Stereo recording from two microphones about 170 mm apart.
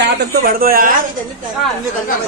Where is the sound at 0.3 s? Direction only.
60° right (ahead or behind).